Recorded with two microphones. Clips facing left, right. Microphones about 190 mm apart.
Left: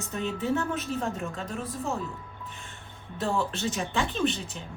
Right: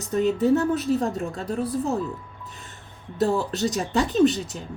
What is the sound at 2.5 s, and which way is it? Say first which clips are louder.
Music: right 1 dB; 40° right (ahead or behind).